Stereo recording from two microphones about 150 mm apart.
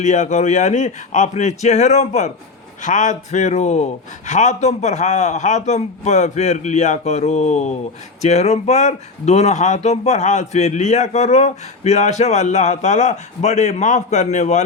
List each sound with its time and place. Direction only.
0.0 s speech: 50° left (ahead or behind)